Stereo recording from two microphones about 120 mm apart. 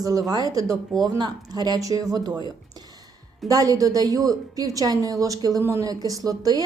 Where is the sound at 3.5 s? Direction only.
30° right (ahead or behind).